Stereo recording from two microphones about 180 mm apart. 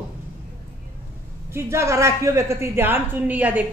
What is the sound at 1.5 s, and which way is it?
A woman's voice, 15° right (ahead or behind).